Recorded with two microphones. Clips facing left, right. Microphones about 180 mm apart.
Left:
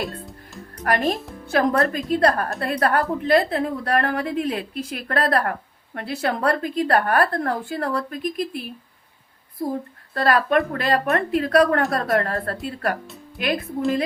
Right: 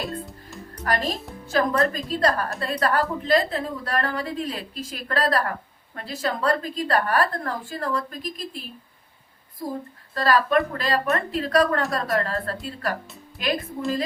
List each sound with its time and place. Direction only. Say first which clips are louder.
0.9 s a woman's voice: left 4 dB; 60° left (ahead or behind)
10.2 s a woman's voice: left 1 dB; 55° left (ahead or behind)